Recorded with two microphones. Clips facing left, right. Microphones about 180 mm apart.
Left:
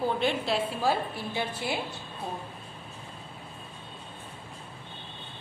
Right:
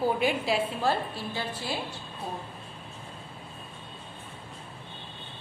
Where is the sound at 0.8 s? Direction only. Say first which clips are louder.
Even; 15° left (ahead or behind).